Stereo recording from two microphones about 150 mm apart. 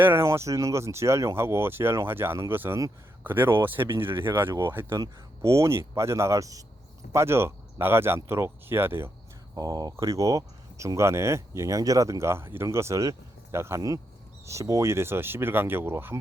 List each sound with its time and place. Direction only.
0.0 s speech: 15° right (ahead or behind)
9.6 s speech: 25° right (ahead or behind)